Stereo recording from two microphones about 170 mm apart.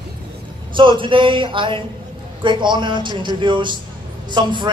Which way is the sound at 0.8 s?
30° right (ahead or behind).